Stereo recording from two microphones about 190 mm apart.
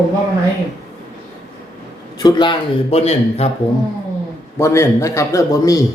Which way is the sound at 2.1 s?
25° left (ahead or behind).